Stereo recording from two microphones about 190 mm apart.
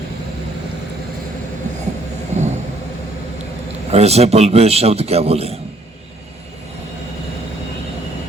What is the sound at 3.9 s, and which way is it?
A man's voice, 35° right (ahead or behind).